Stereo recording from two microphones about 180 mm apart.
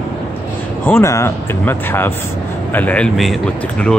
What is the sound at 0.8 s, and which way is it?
Speech, 15° left (ahead or behind).